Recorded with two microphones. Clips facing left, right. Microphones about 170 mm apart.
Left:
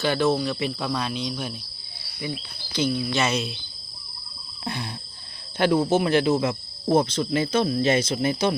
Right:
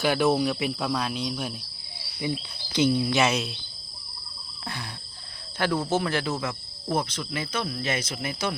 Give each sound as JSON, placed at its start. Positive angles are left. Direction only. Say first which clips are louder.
{"t": 0.0, "sound": "speech", "louder": "even", "side_deg": -10}
{"t": 2.7, "sound": "speech", "louder": "right 2 dB", "side_deg": -20}
{"t": 3.2, "sound": "speech", "louder": "right 1 dB", "side_deg": -5}
{"t": 4.6, "sound": "speech", "louder": "left 6 dB", "side_deg": 20}